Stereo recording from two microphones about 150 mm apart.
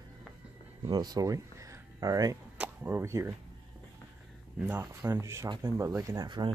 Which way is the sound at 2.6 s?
10° right (ahead or behind).